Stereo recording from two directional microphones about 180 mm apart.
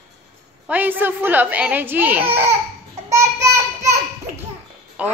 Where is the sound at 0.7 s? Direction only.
10° right (ahead or behind).